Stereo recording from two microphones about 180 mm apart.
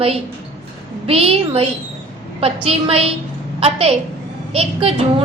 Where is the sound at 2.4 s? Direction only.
35° right (ahead or behind).